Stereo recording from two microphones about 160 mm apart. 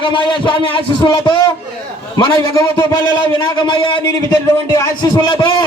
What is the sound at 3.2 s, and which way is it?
Speech, 30° left (ahead or behind).